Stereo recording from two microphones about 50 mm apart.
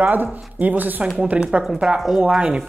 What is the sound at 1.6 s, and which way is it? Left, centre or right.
Speech, centre.